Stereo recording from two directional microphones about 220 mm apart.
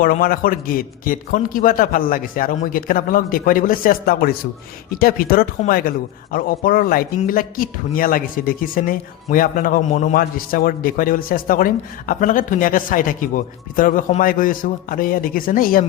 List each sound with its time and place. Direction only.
0.0 s speech: 40° left (ahead or behind)